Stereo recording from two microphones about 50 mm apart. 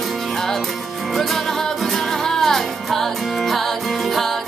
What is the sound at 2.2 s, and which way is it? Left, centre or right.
Music, centre.